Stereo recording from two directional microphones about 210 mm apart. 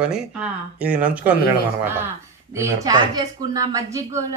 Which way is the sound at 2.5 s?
15° right (ahead or behind).